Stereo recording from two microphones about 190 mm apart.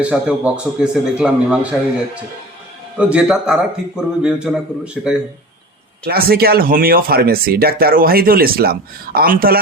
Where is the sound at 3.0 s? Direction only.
5° right (ahead or behind).